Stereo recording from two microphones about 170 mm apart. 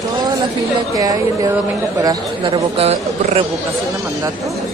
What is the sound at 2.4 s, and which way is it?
Speech, 30° right (ahead or behind).